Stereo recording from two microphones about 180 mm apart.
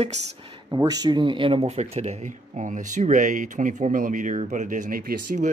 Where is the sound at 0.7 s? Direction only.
20° right (ahead or behind).